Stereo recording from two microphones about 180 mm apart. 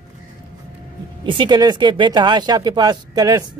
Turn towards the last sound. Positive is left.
turn(degrees=-20)  # may be behind; listen again after turning